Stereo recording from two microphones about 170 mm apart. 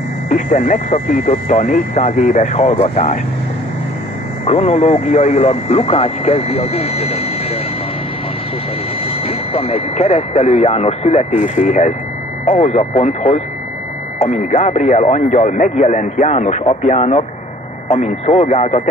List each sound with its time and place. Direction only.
0.3 s speech: 45° left (ahead or behind)
4.5 s speech: 35° left (ahead or behind)
9.0 s speech: 35° left (ahead or behind)